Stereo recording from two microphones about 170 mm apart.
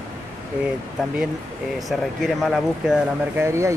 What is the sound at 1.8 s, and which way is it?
Speech, centre (ahead or behind).